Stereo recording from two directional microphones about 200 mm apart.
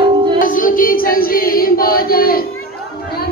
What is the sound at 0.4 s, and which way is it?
Choir, 45° left (ahead or behind).